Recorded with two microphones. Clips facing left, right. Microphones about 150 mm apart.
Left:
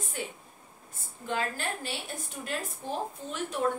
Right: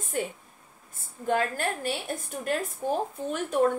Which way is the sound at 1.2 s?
50° right (ahead or behind).